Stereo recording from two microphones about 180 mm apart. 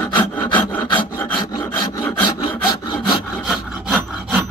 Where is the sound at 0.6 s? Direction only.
10° left (ahead or behind).